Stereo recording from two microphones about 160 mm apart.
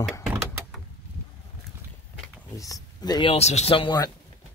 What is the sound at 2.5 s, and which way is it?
Speech, 20° left (ahead or behind).